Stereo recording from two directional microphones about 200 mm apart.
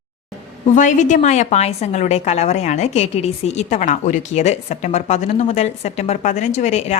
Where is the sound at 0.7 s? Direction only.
40° left (ahead or behind).